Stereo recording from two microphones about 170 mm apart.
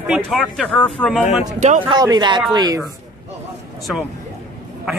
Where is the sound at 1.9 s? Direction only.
25° right (ahead or behind).